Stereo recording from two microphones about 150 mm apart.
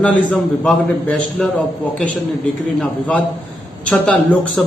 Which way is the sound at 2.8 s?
10° left (ahead or behind).